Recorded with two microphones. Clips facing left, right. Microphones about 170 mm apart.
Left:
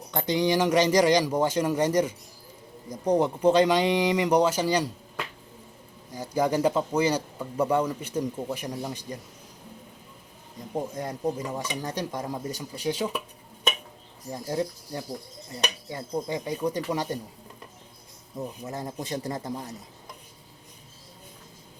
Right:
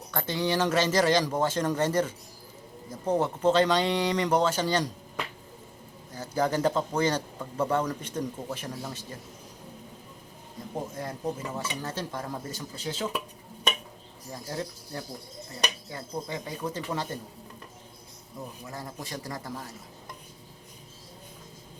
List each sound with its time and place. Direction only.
0.1 s a man's voice: 20° left (ahead or behind)
6.1 s a man's voice: 10° left (ahead or behind)
10.9 s a man's voice: 15° left (ahead or behind)
14.4 s a man's voice: 20° left (ahead or behind)
18.3 s speech: 20° left (ahead or behind)